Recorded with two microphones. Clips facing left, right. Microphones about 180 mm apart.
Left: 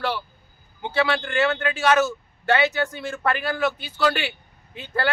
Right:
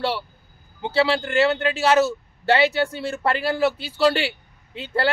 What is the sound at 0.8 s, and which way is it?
Speech, 30° right (ahead or behind).